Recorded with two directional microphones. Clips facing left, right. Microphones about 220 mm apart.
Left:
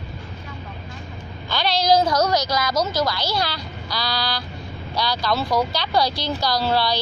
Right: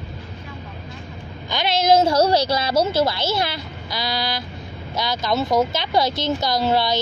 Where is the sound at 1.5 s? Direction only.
20° right (ahead or behind).